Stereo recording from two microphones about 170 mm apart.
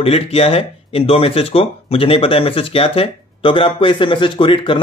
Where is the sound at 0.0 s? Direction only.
35° left (ahead or behind).